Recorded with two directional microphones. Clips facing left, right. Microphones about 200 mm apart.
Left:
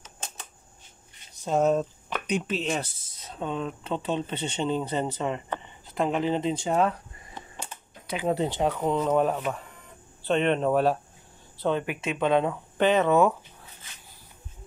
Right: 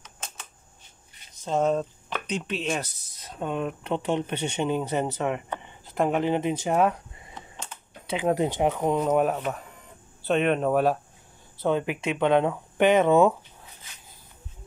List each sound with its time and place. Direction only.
1.4 s speech: 10° left (ahead or behind)
3.3 s speech: 10° right (ahead or behind)
8.1 s speech: 15° right (ahead or behind)